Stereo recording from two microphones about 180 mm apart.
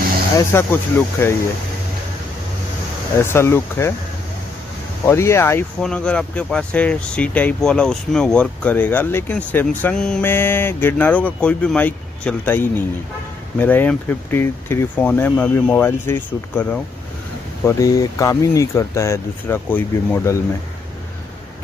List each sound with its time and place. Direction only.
0.5 s speech: 10° left (ahead or behind)
3.3 s speech: 15° left (ahead or behind)
5.0 s speech: 15° left (ahead or behind)